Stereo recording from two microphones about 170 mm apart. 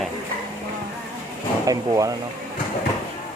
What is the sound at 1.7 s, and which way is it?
Speech, 20° right (ahead or behind).